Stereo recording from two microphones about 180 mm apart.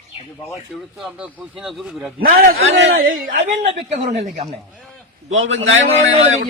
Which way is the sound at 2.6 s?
85° right.